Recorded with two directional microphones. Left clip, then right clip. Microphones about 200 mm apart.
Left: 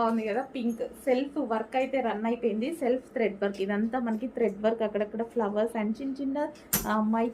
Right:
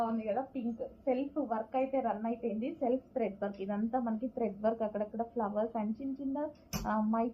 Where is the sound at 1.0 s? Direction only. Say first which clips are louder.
Left 6 dB; 30° left (ahead or behind).